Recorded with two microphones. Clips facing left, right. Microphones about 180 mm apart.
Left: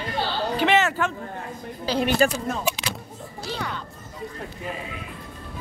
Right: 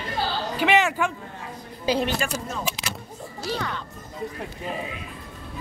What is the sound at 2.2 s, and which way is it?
Speech, 40° left (ahead or behind).